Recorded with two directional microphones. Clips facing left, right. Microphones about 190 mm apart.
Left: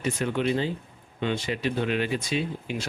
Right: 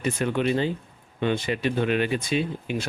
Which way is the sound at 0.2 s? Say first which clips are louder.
Right 2 dB; 55° right (ahead or behind).